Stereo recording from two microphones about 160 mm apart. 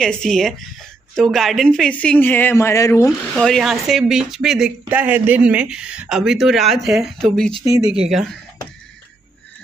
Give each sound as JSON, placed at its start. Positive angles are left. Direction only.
{"t": 0.0, "sound": "speech", "side_deg": 5}
{"t": 3.3, "sound": "speech", "side_deg": 0}